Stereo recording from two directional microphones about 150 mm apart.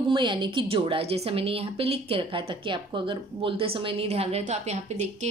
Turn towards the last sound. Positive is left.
turn(degrees=-45)  # may be behind; listen again after turning